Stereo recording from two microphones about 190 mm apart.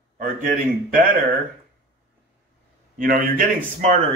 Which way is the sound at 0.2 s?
45° right (ahead or behind).